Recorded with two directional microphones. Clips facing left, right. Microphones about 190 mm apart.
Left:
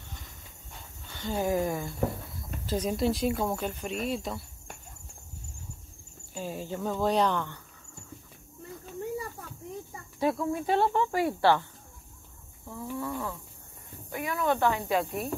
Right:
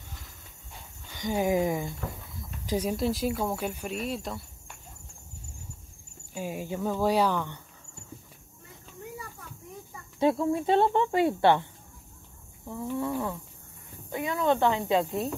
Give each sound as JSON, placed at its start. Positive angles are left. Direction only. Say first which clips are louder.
{"t": 1.1, "sound": "speech", "louder": "right 2 dB", "side_deg": -15}
{"t": 2.9, "sound": "speech", "louder": "left 3 dB", "side_deg": 0}
{"t": 6.3, "sound": "speech", "louder": "right 2 dB", "side_deg": -10}
{"t": 10.1, "sound": "speech", "louder": "right 3 dB", "side_deg": -25}
{"t": 14.1, "sound": "speech", "louder": "right 2 dB", "side_deg": -25}